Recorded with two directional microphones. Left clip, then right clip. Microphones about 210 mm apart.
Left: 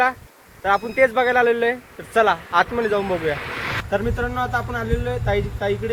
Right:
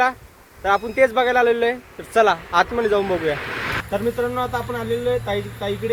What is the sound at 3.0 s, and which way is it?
Speech, 45° right (ahead or behind).